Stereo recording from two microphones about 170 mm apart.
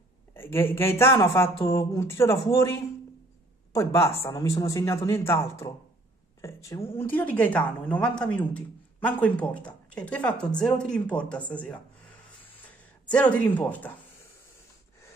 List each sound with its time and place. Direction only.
0.3 s a woman's voice: 15° left (ahead or behind)
13.1 s a woman's voice: 10° left (ahead or behind)